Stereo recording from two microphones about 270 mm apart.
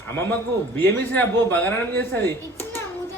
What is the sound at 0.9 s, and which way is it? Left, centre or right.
A man's voice, centre.